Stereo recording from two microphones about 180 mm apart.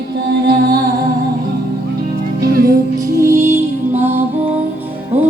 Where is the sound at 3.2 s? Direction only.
15° right (ahead or behind).